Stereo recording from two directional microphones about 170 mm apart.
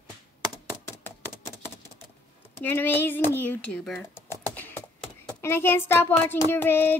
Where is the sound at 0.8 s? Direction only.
15° left (ahead or behind).